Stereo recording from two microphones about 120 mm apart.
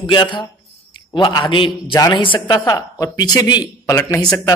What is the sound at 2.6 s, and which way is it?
A man's voice, 30° left (ahead or behind).